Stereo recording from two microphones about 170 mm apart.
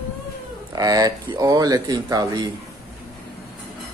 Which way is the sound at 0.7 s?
20° right (ahead or behind).